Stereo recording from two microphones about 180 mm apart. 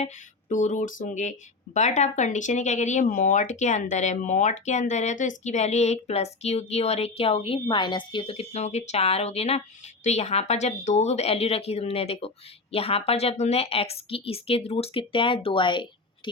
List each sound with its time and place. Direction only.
0.0 s speech: 45° left (ahead or behind); by 16.3 s 25° left (ahead or behind)